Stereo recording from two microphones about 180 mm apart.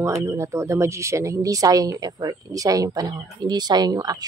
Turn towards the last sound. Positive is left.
turn(degrees=-20)  # may be behind; listen again after turning